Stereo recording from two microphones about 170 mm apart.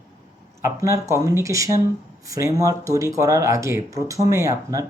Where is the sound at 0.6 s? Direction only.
20° right (ahead or behind).